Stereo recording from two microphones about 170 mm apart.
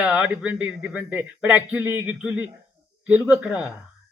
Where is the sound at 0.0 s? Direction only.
5° right (ahead or behind).